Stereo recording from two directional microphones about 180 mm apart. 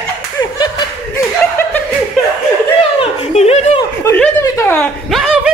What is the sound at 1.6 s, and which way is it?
Chuckle, 10° left (ahead or behind).